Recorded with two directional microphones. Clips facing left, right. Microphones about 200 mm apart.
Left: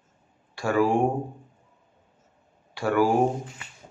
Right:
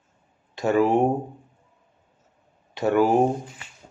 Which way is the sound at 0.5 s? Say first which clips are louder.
Right 3 dB; 20° right (ahead or behind).